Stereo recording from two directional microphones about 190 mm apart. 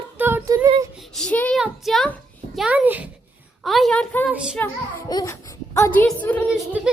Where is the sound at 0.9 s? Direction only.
5° left (ahead or behind).